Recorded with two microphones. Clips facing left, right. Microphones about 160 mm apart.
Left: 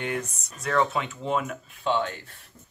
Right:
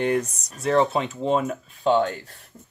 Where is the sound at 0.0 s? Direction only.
35° right (ahead or behind).